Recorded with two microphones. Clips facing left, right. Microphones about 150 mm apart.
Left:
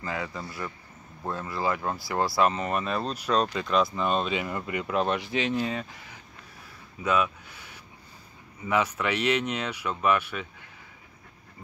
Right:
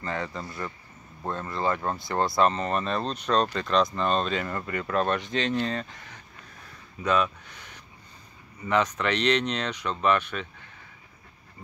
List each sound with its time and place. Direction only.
0.0 s speech: 5° left (ahead or behind)